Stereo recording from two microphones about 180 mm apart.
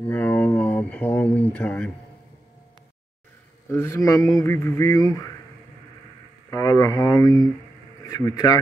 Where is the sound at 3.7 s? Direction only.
15° left (ahead or behind).